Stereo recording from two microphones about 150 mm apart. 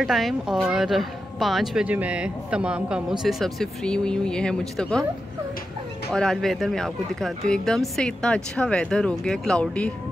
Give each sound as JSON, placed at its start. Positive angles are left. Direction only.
{"t": 0.0, "sound": "a woman's voice", "side_deg": 0}
{"t": 6.1, "sound": "a woman's voice", "side_deg": 5}